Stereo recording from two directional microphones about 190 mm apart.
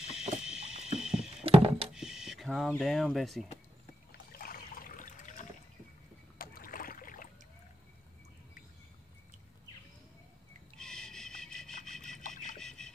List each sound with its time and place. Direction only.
0.1 s fire alarm: 5° right (ahead or behind)
1.4 s a sound: 30° right (ahead or behind)
2.0 s speech: centre (ahead or behind)
4.1 s boat: 50° left (ahead or behind)
10.8 s wood: 5° left (ahead or behind)
12.5 s a sound: 5° left (ahead or behind)